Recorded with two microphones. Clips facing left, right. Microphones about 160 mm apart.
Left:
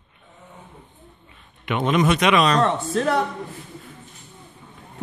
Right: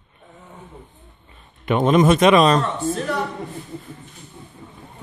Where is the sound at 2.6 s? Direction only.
70° left (ahead or behind).